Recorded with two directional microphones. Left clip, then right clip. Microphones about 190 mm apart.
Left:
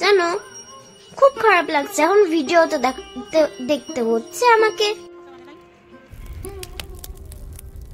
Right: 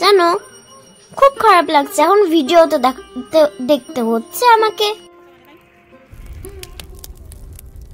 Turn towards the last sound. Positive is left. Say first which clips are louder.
# even
turn(degrees=0)  # may be behind; listen again after turning